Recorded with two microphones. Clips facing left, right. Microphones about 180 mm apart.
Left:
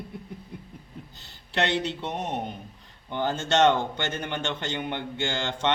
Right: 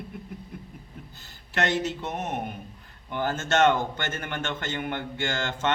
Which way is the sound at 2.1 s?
15° left (ahead or behind).